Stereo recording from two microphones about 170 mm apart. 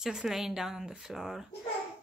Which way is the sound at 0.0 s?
5° right (ahead or behind).